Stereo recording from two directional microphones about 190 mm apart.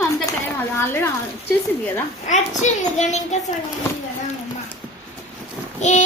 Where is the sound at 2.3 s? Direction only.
40° left (ahead or behind).